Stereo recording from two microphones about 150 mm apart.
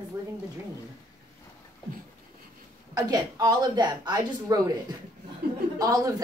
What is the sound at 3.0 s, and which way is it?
A woman's voice, 25° right (ahead or behind).